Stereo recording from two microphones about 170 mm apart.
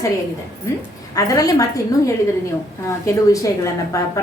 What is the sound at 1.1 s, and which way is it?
Speech, 20° left (ahead or behind).